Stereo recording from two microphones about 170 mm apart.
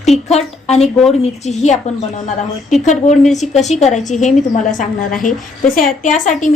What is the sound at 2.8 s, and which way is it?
A woman's voice, 45° left (ahead or behind).